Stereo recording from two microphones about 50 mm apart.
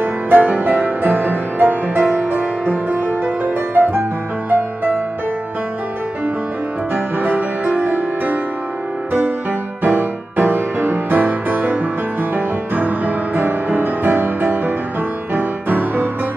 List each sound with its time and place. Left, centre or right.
0.0 s music: right
7.2 s music: right
9.8 s music: right